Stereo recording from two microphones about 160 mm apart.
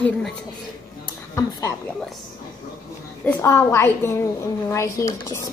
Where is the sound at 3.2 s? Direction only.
15° left (ahead or behind).